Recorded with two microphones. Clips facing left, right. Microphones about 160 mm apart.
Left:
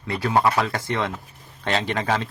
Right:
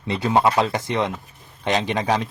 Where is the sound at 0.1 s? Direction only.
20° right (ahead or behind).